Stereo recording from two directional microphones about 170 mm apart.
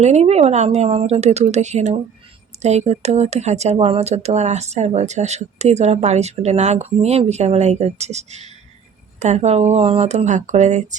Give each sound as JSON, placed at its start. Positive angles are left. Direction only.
{"t": 0.0, "sound": "speech", "side_deg": -40}